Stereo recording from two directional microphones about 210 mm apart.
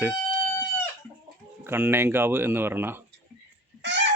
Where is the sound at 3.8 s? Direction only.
55° right (ahead or behind).